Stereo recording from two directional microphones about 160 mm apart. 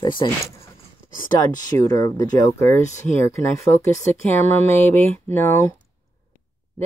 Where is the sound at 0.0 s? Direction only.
30° left (ahead or behind).